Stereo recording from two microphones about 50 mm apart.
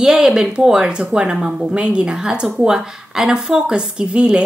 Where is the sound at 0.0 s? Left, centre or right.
Centre.